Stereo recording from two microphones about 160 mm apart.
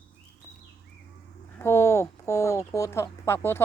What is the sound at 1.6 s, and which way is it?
Speech, 15° left (ahead or behind).